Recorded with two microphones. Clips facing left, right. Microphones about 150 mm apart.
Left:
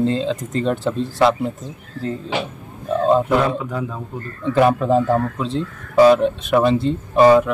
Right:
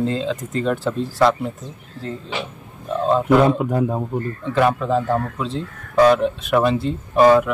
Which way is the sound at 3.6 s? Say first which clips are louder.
Right 6 dB; 40° right (ahead or behind).